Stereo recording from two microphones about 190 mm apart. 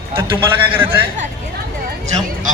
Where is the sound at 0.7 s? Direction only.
10° right (ahead or behind).